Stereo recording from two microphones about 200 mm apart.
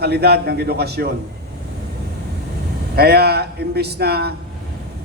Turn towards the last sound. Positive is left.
turn(degrees=-55)  # may be behind; listen again after turning